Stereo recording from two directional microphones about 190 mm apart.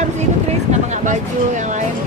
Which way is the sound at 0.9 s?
40° right (ahead or behind).